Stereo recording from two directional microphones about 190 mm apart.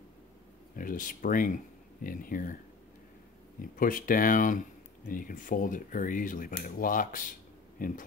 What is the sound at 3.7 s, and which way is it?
Speech, 45° left (ahead or behind).